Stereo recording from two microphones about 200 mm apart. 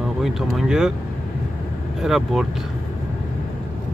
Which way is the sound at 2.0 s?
Centre (ahead or behind).